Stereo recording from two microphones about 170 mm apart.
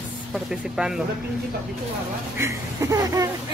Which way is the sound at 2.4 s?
20° right (ahead or behind).